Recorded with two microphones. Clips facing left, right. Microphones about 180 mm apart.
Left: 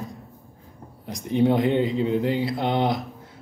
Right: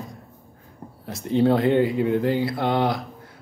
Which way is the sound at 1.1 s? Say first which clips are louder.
Right 1 dB; 15° left (ahead or behind).